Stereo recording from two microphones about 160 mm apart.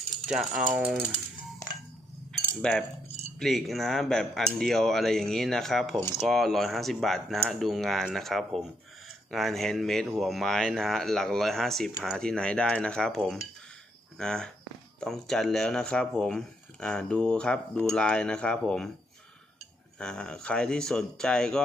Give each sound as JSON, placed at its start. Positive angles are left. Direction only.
{"t": 0.3, "sound": "speech", "side_deg": -5}
{"t": 2.6, "sound": "speech", "side_deg": 5}
{"t": 3.1, "sound": "a sound", "side_deg": 45}
{"t": 3.3, "sound": "speech", "side_deg": 0}
{"t": 20.0, "sound": "speech", "side_deg": 5}